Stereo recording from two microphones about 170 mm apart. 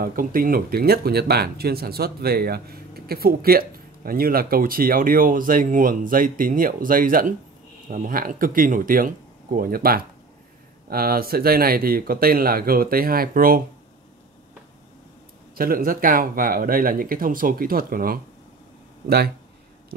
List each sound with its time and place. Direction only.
0.0 s speech: 60° right (ahead or behind)
15.5 s speech: 60° right (ahead or behind)